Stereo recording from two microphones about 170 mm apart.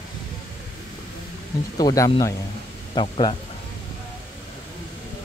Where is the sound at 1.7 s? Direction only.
20° left (ahead or behind).